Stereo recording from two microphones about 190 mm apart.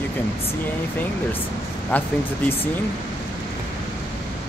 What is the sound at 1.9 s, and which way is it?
Speech, 10° left (ahead or behind).